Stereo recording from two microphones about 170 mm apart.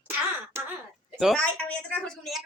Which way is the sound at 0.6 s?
15° right (ahead or behind).